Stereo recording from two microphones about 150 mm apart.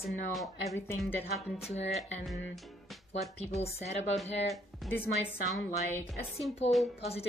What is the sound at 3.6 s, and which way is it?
Speech, 45° left (ahead or behind).